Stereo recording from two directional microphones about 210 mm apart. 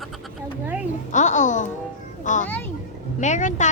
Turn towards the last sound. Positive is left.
turn(degrees=35)  # may be behind; listen again after turning